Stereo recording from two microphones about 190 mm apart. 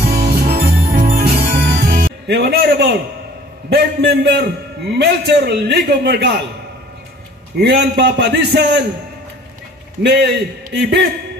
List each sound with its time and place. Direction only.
0.5 s music: 40° right (ahead or behind); by 3.0 s 60° right (ahead or behind)
3.7 s a man's voice: 60° right (ahead or behind)
7.6 s a man's voice: 60° right (ahead or behind)
10.0 s a man's voice: 60° right (ahead or behind)